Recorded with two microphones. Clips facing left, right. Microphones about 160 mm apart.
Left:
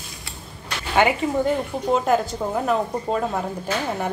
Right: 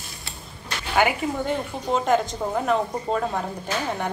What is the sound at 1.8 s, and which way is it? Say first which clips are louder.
A woman's voice: left 1 dB; 5° left (ahead or behind).